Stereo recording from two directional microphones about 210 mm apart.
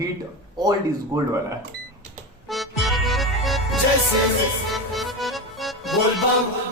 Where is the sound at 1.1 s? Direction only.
15° right (ahead or behind).